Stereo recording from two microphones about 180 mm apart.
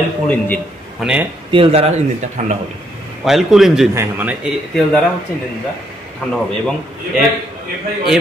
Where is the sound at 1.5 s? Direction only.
30° right (ahead or behind).